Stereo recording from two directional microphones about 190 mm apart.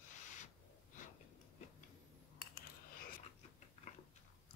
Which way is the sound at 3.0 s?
45° left (ahead or behind).